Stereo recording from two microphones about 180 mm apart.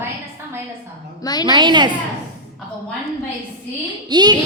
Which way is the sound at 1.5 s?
25° right (ahead or behind).